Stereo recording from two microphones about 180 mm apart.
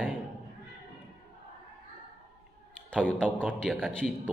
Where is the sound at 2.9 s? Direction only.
5° left (ahead or behind).